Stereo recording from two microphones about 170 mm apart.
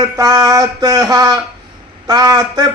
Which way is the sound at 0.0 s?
20° right (ahead or behind).